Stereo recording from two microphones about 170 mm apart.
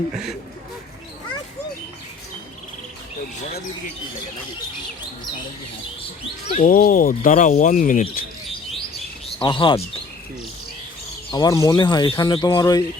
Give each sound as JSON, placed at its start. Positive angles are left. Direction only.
{"t": 6.5, "sound": "speech", "side_deg": 50}
{"t": 9.4, "sound": "speech", "side_deg": 30}
{"t": 11.3, "sound": "speech", "side_deg": 20}